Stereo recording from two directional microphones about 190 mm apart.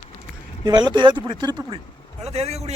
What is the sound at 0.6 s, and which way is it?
A man's voice, 20° right (ahead or behind).